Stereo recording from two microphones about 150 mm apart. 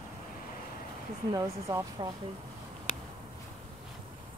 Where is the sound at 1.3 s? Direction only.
20° right (ahead or behind).